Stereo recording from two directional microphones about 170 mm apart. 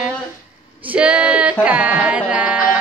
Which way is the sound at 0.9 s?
5° right (ahead or behind).